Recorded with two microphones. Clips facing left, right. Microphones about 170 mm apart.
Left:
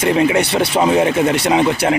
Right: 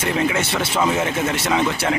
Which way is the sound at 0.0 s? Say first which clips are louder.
Left 7 dB; 15° left (ahead or behind).